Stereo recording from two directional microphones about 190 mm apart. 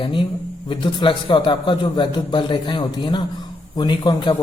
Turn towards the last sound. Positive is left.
turn(degrees=25)  # may be behind; listen again after turning